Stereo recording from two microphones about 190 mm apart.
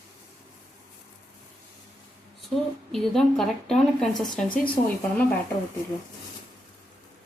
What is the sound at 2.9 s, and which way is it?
A woman's voice, centre (ahead or behind).